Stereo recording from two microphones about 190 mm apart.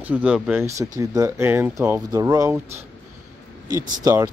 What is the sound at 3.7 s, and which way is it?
Speech, 15° right (ahead or behind).